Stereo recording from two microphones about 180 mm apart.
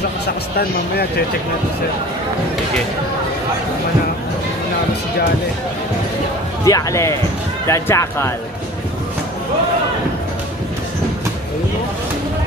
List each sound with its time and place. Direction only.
6.6 s speech: 20° left (ahead or behind)